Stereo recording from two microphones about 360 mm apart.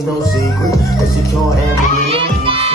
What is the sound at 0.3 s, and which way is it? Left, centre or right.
Speech, centre.